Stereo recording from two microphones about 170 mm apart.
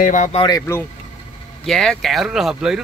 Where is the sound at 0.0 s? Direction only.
50° left (ahead or behind).